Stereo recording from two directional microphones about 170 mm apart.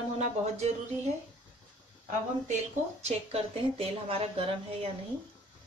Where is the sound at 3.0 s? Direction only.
35° right (ahead or behind).